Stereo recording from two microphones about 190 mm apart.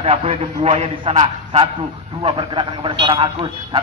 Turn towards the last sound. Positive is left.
turn(degrees=-25)  # may be behind; listen again after turning